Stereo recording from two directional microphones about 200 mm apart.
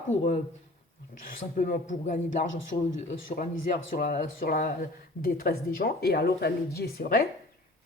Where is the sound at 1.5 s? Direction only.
40° left (ahead or behind).